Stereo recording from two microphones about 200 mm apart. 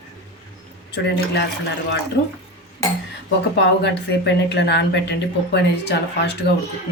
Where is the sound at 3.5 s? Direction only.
60° left (ahead or behind).